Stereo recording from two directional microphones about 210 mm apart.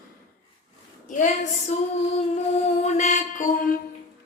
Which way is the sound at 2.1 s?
30° left (ahead or behind).